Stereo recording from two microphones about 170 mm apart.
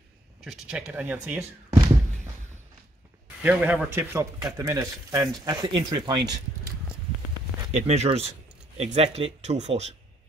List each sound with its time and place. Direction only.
0.4 s speech: 5° right (ahead or behind)
3.4 s a man's voice: 10° right (ahead or behind)
7.7 s speech: 40° right (ahead or behind)